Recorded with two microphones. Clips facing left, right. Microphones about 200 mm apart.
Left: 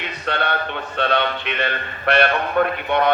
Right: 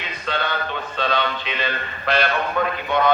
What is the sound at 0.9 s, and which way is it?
Speech, 60° left (ahead or behind).